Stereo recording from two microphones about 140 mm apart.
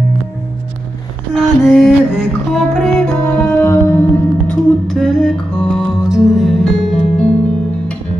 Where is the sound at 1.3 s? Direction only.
Centre (ahead or behind); by 4.0 s 15° left (ahead or behind).